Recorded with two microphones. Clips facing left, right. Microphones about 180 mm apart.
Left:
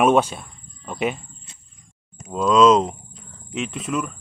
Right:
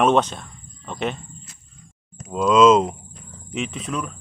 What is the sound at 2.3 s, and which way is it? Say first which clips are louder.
Speech: right 1 dB; centre (ahead or behind).